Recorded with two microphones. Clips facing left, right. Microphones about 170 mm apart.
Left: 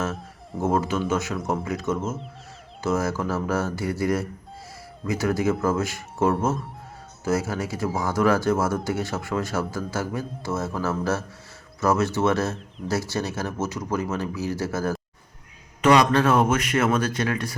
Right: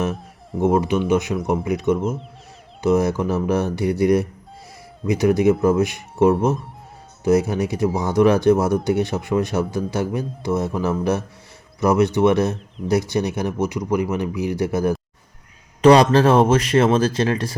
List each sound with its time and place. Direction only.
0.6 s speech: 15° right (ahead or behind)
15.8 s speech: 30° right (ahead or behind)